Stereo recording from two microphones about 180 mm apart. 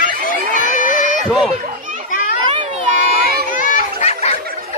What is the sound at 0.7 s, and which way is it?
Crowd, 45° left (ahead or behind).